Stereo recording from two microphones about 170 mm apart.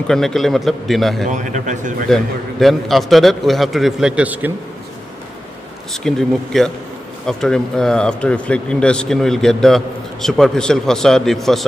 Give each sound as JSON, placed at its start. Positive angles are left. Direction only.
{"t": 0.0, "sound": "speech", "side_deg": 5}
{"t": 1.3, "sound": "speech", "side_deg": -45}
{"t": 2.6, "sound": "speech", "side_deg": 0}
{"t": 6.0, "sound": "speech", "side_deg": 5}